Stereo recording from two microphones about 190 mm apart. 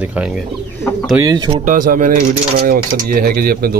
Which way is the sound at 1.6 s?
45° right (ahead or behind).